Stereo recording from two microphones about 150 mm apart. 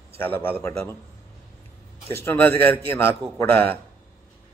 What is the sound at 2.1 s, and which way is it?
Speech, 15° left (ahead or behind).